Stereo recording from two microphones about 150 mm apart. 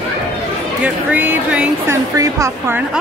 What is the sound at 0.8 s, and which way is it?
A woman's voice, 10° right (ahead or behind).